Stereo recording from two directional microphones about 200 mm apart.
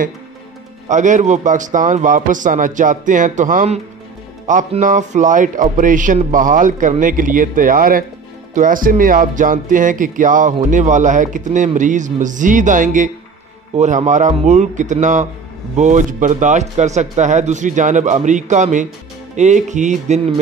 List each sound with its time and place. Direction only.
0.8 s speech: 40° right (ahead or behind)